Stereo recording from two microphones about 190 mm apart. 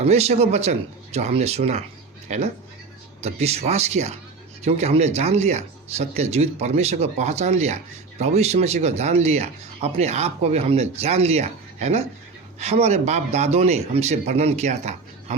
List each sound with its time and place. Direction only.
0.0 s speech: 35° right (ahead or behind)